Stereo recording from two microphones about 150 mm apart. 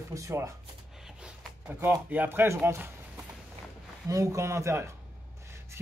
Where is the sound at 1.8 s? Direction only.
15° right (ahead or behind).